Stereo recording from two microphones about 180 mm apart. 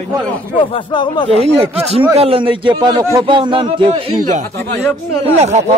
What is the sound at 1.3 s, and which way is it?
A man's voice, 35° right (ahead or behind).